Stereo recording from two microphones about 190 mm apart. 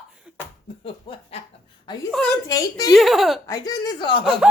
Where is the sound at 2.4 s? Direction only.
20° left (ahead or behind).